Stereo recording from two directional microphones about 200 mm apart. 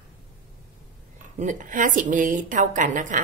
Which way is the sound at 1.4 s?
40° right (ahead or behind).